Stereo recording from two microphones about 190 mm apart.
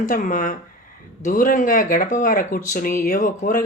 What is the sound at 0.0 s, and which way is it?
Speech, 45° left (ahead or behind).